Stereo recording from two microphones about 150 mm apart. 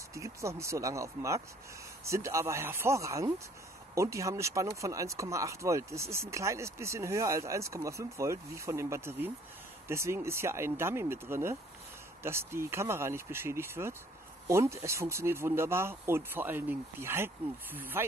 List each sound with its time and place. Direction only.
0.1 s speech: 20° right (ahead or behind)